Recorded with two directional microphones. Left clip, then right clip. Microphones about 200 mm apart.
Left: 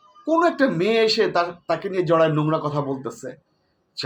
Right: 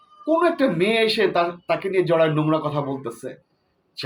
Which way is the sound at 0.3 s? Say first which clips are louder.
Even; 5° left (ahead or behind).